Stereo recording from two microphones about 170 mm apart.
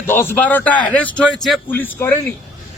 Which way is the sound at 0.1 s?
15° left (ahead or behind).